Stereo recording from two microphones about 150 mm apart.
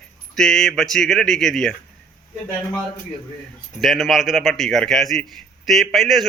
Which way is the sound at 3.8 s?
Centre (ahead or behind).